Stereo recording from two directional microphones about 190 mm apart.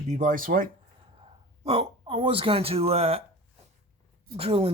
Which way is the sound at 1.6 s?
30° right (ahead or behind).